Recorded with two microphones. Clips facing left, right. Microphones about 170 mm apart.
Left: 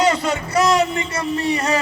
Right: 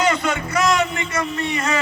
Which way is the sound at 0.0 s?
35° left (ahead or behind).